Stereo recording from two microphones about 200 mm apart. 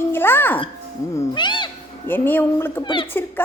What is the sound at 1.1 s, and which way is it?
Music, 20° left (ahead or behind).